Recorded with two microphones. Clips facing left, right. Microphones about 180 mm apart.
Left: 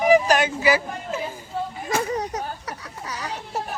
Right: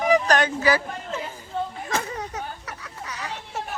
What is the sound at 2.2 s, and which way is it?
Children playing, 40° left (ahead or behind).